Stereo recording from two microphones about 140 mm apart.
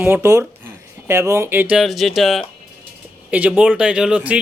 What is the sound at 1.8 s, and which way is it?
A man's voice, centre (ahead or behind).